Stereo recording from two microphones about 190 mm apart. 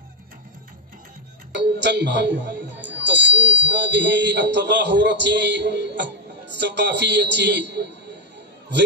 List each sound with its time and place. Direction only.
1.5 s speech: 65° right (ahead or behind)